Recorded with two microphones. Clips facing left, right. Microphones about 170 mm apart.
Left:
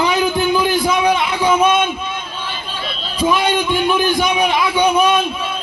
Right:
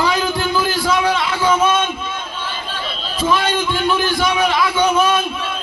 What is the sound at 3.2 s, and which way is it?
A man's voice, 15° left (ahead or behind).